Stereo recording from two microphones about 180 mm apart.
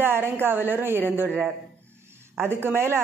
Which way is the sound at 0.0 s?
10° right (ahead or behind).